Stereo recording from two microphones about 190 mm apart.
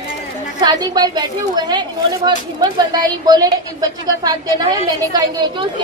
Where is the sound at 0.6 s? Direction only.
20° right (ahead or behind).